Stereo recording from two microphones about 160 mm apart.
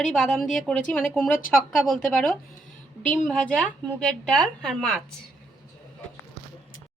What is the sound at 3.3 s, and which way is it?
A woman's voice, 5° left (ahead or behind).